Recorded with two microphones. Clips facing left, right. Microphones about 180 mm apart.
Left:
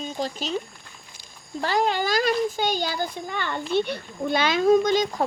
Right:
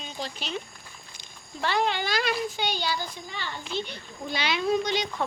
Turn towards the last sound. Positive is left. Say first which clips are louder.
# left 7 dB
turn(degrees=45)  # may be behind; listen again after turning